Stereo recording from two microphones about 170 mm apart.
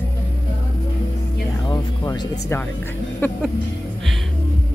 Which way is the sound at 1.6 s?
25° left (ahead or behind).